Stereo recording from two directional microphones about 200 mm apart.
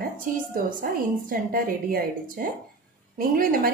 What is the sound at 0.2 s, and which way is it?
A woman's voice, 45° right (ahead or behind).